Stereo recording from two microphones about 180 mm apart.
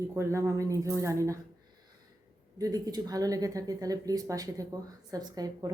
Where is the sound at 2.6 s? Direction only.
20° right (ahead or behind).